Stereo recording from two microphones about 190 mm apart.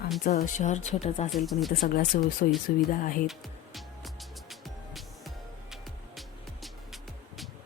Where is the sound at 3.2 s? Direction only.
Centre (ahead or behind).